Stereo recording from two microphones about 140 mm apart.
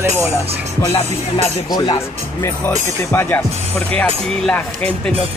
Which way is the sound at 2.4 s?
20° left (ahead or behind).